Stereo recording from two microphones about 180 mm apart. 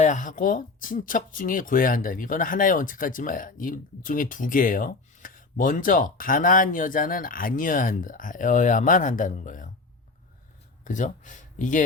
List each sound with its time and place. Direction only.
0.0 s speech: 45° left (ahead or behind)
10.8 s speech: 45° left (ahead or behind)